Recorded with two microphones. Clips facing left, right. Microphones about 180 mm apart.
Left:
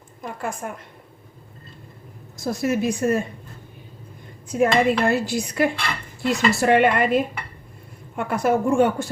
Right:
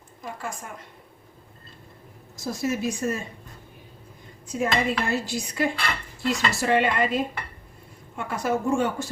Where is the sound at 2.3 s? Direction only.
60° left (ahead or behind).